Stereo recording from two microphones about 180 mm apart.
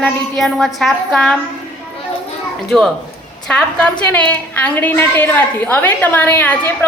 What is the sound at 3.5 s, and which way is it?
A woman's voice, 5° left (ahead or behind).